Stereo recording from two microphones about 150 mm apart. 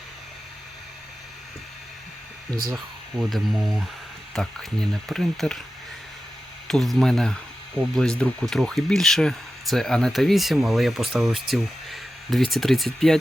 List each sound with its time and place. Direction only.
2.6 s speech: centre (ahead or behind)
6.7 s speech: 5° left (ahead or behind)